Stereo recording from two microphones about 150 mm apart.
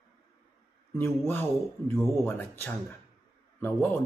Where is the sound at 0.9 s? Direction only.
15° left (ahead or behind).